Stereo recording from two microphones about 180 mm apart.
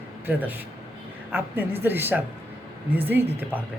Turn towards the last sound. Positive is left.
turn(degrees=-10)  # may be behind; listen again after turning